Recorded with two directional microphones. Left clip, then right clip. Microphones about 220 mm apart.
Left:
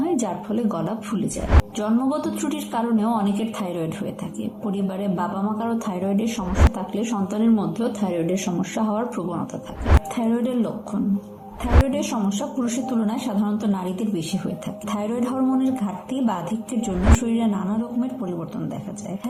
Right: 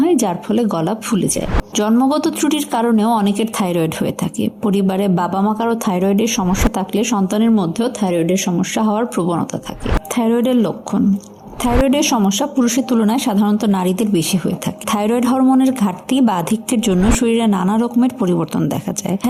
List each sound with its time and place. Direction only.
0.0 s a woman's voice: 45° right (ahead or behind)